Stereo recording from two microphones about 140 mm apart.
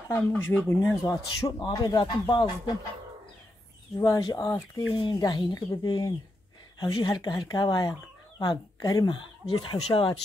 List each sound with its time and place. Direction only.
0.3 s speech: 15° left (ahead or behind)
1.0 s speech: 30° left (ahead or behind)
4.0 s speech: 25° left (ahead or behind)
9.8 s speech: 45° left (ahead or behind)